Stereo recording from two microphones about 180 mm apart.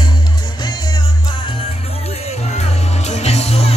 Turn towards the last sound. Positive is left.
turn(degrees=35)  # may be behind; listen again after turning